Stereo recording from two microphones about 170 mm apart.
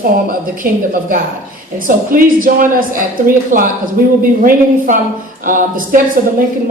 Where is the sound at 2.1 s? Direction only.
55° right (ahead or behind).